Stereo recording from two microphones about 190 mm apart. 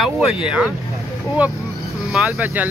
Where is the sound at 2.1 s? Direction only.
5° right (ahead or behind).